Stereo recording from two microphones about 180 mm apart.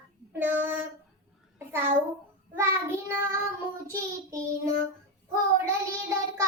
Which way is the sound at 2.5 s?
10° right (ahead or behind).